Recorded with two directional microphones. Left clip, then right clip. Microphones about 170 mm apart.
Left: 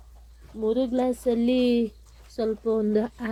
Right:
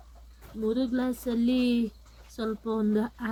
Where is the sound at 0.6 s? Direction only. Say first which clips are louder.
Left 5 dB; 5° left (ahead or behind).